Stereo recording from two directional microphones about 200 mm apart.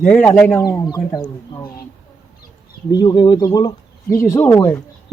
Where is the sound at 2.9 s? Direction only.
20° left (ahead or behind).